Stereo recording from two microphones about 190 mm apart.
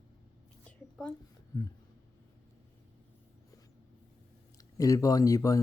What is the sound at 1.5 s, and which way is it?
Speech, 15° left (ahead or behind).